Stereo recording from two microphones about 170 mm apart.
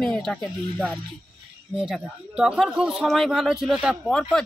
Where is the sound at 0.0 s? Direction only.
5° left (ahead or behind).